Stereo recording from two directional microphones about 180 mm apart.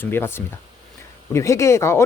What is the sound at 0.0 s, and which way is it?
Speech, 10° left (ahead or behind).